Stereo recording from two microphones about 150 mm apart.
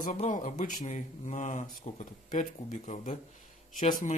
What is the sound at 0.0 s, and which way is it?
Speech, 55° left (ahead or behind).